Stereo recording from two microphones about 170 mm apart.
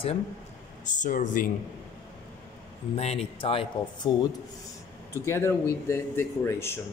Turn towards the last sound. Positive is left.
turn(degrees=15)  # may be behind; listen again after turning